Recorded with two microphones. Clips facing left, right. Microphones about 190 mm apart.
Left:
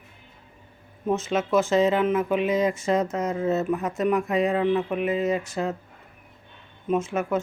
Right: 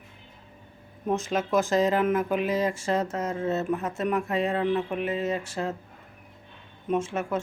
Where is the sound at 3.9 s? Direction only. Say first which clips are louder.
Left 6 dB; 30° right (ahead or behind).